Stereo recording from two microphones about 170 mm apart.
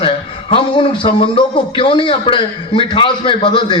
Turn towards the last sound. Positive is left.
turn(degrees=30)  # may be behind; listen again after turning